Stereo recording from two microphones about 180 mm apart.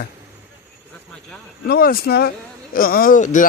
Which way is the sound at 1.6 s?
55° left (ahead or behind).